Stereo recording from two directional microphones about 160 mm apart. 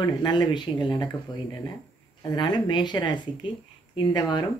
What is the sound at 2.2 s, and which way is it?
Speech, 25° left (ahead or behind).